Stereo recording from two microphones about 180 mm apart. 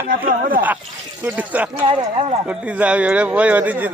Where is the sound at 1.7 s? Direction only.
30° right (ahead or behind).